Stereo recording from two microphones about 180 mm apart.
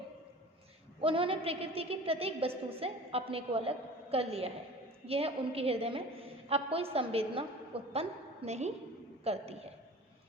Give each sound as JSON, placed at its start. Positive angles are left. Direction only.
{"t": 1.0, "sound": "a woman's voice", "side_deg": -30}